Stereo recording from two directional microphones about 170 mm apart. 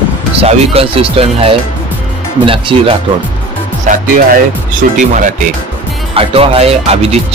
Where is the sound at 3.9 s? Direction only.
50° right (ahead or behind).